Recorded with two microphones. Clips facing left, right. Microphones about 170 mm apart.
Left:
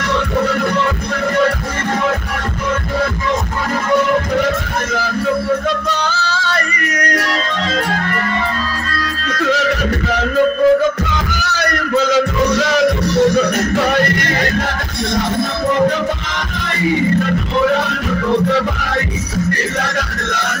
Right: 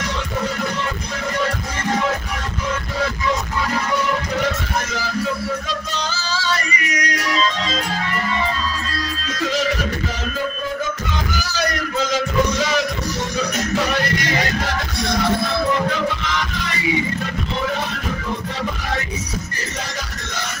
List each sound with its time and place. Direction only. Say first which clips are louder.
5.7 s music: left 7 dB; 60° left (ahead or behind)
11.4 s a sound: left 4 dB; 65° left (ahead or behind)
13.1 s music: left 11 dB; 60° left (ahead or behind)